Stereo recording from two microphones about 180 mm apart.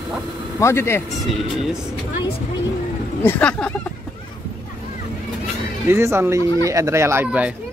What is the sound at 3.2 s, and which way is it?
Speech, 10° left (ahead or behind).